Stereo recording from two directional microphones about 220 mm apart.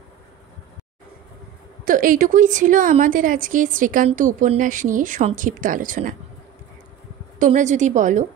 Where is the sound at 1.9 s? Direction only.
40° right (ahead or behind).